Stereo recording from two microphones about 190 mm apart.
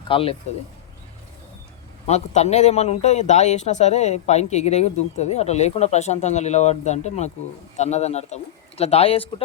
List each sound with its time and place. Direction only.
0.1 s speech: 30° left (ahead or behind)
2.0 s speech: 35° left (ahead or behind)